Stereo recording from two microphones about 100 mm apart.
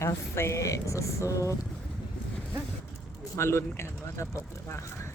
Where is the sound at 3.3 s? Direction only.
25° left (ahead or behind).